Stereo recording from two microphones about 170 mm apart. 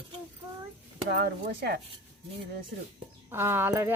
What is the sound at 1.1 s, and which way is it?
Speech, 75° right (ahead or behind).